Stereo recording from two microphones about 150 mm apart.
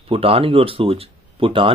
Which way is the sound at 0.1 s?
40° right (ahead or behind).